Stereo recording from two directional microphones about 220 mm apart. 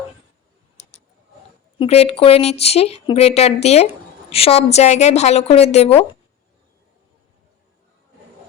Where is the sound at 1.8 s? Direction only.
25° left (ahead or behind).